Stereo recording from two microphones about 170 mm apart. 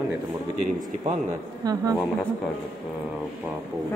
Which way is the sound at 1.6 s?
20° right (ahead or behind).